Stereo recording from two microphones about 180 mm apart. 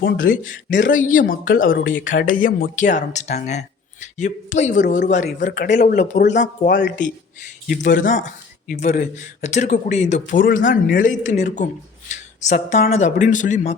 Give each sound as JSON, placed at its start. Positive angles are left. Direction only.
{"t": 0.0, "sound": "speech", "side_deg": 65}
{"t": 0.5, "sound": "speech", "side_deg": 45}